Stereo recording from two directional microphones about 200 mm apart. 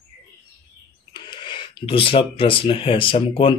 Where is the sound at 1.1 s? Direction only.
20° left (ahead or behind).